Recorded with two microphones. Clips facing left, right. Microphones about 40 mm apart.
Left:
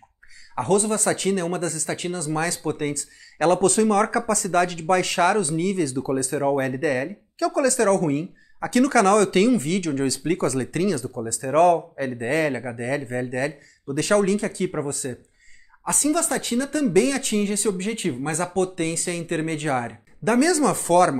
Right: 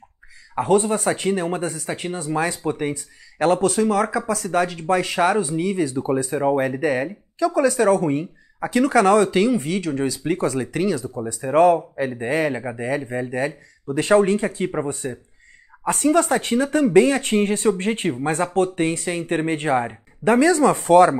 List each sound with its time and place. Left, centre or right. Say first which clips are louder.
0.6 s speech: right 3 dB; right
13.8 s speech: right 3 dB; right